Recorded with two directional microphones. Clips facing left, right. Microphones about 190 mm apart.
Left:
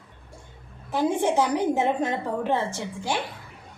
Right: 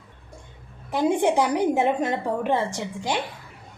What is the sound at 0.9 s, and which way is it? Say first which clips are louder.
A woman's voice: right 2 dB; 15° right (ahead or behind).